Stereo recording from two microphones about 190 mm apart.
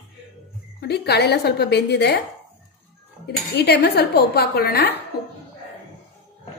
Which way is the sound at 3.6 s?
55° left (ahead or behind).